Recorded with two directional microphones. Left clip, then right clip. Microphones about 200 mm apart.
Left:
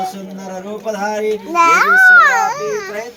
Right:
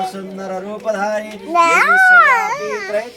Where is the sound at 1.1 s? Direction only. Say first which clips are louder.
Left 1 dB; 10° right (ahead or behind).